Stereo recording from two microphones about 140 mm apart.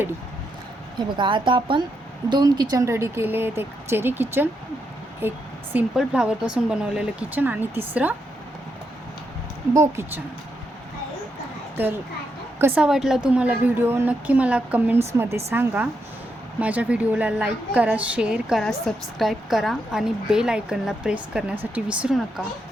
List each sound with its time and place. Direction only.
0.9 s a woman's voice: 35° right (ahead or behind); by 8.1 s 15° right (ahead or behind)
9.7 s speech: 20° right (ahead or behind)
11.8 s a woman's voice: 15° right (ahead or behind)
12.8 s a woman's voice: 5° right (ahead or behind)